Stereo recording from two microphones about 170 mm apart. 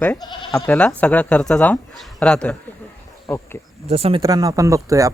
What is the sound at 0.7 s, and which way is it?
Speech, 5° left (ahead or behind).